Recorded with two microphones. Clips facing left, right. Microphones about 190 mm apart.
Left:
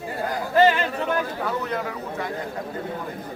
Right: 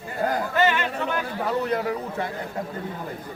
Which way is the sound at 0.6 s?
35° left (ahead or behind).